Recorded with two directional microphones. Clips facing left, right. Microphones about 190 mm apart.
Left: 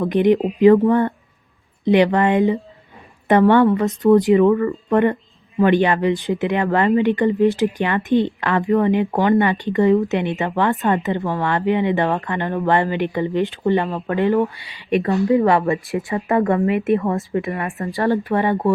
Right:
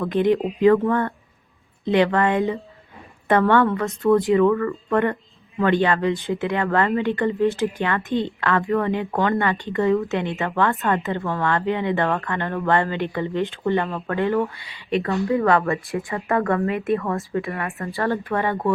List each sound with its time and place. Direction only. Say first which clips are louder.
0.0 s a woman's voice: left 4 dB; 20° left (ahead or behind)